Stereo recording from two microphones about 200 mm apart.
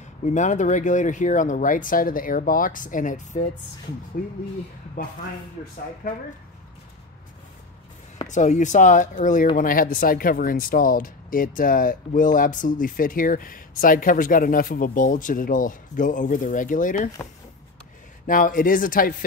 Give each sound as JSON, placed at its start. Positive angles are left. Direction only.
{"t": 0.2, "sound": "speech", "side_deg": 35}
{"t": 6.0, "sound": "speech", "side_deg": 45}
{"t": 8.3, "sound": "speech", "side_deg": 35}
{"t": 18.2, "sound": "speech", "side_deg": 40}